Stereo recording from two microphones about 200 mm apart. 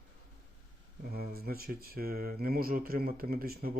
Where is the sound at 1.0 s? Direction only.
50° right (ahead or behind).